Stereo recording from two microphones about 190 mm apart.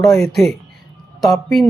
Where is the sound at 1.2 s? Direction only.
Centre (ahead or behind).